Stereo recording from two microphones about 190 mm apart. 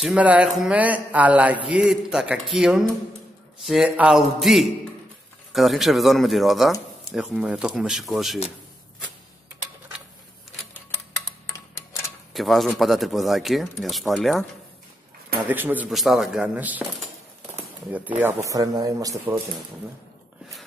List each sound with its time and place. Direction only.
0.0 s a man's voice: 5° right (ahead or behind)
12.4 s a man's voice: centre (ahead or behind)
15.4 s speech: 10° right (ahead or behind)